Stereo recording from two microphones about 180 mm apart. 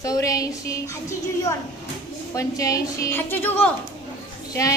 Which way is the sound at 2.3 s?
20° left (ahead or behind).